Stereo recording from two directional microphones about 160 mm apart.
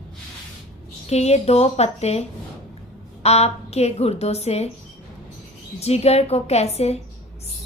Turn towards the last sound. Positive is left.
turn(degrees=40)  # may be behind; listen again after turning